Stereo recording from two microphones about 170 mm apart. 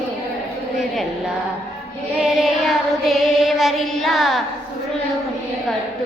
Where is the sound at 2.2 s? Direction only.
Centre (ahead or behind).